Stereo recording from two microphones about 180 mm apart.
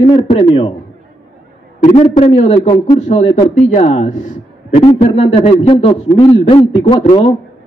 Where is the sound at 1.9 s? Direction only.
35° left (ahead or behind).